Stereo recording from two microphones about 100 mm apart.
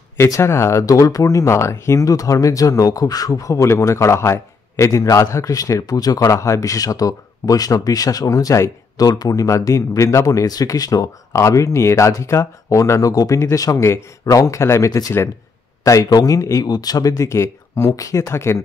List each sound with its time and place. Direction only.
0.2 s speech: 30° left (ahead or behind)